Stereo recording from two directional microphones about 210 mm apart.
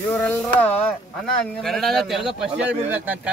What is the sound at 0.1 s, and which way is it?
Speech, 5° left (ahead or behind).